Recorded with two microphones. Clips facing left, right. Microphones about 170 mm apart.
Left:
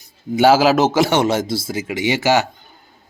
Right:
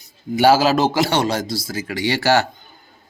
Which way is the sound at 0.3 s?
20° left (ahead or behind).